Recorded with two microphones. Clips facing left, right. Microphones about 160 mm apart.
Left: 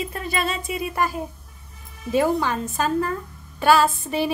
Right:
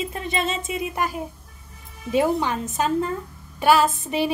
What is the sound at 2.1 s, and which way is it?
Speech, 20° right (ahead or behind).